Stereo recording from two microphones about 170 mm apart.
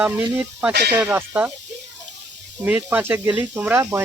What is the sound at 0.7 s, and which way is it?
Speech, 80° right.